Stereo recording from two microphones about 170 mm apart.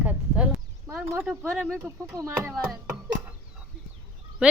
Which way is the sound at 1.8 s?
15° right (ahead or behind).